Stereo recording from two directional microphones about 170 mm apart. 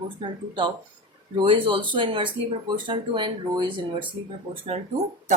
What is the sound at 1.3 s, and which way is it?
A woman's voice, 30° right (ahead or behind).